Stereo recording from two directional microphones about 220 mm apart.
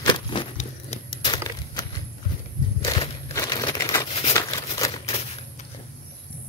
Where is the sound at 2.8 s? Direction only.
20° left (ahead or behind).